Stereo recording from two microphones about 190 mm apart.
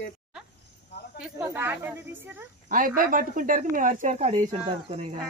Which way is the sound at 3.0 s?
45° right (ahead or behind).